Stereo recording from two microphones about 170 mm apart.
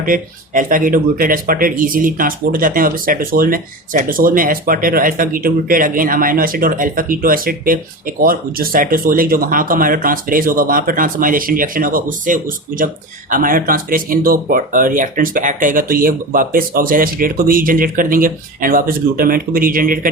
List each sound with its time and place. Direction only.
0.0 s speech: 50° right (ahead or behind)